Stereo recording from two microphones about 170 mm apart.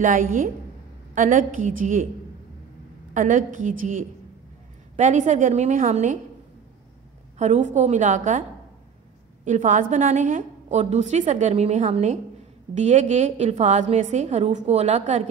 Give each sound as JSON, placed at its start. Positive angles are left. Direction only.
{"t": 0.0, "sound": "a woman's voice", "side_deg": -50}
{"t": 3.2, "sound": "a woman's voice", "side_deg": -50}
{"t": 7.3, "sound": "a woman's voice", "side_deg": -45}